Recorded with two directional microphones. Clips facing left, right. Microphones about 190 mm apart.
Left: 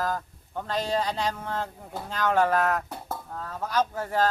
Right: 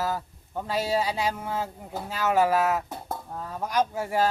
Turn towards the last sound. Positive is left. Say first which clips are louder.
# right 1 dB
turn(degrees=-10)  # may be behind; listen again after turning